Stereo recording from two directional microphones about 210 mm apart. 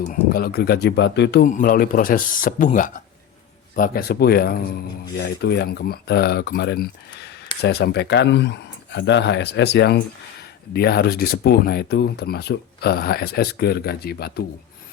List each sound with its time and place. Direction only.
0.0 s speech: 45° left (ahead or behind)
1.5 s speech: 40° left (ahead or behind)